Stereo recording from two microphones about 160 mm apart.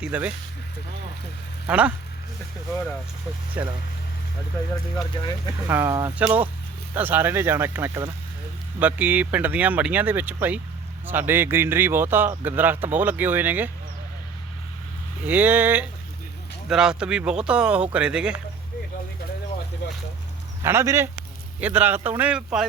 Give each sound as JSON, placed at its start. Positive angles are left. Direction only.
{"t": 0.0, "sound": "speech", "side_deg": -10}
{"t": 1.6, "sound": "speech", "side_deg": -10}
{"t": 3.6, "sound": "speech", "side_deg": -10}
{"t": 5.2, "sound": "speech", "side_deg": 30}
{"t": 5.6, "sound": "speech", "side_deg": -15}
{"t": 15.3, "sound": "speech", "side_deg": -10}
{"t": 19.8, "sound": "boat", "side_deg": 90}
{"t": 20.6, "sound": "speech", "side_deg": -15}